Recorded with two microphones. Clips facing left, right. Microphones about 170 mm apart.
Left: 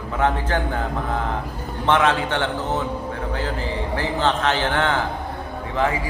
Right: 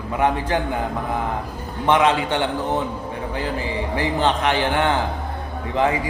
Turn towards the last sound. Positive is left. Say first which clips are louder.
# right 2 dB
turn(degrees=-20)  # may be behind; listen again after turning